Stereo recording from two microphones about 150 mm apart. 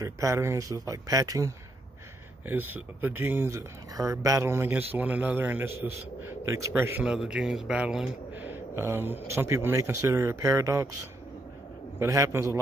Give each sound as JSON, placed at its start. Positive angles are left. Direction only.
{"t": 0.0, "sound": "a man's voice", "side_deg": -20}
{"t": 12.0, "sound": "speech", "side_deg": -20}